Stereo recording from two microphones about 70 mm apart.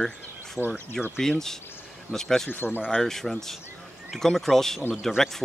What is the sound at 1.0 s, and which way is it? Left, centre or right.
Speech, centre.